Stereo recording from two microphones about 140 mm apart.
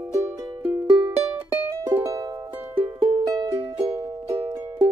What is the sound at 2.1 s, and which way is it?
Music, 30° right (ahead or behind).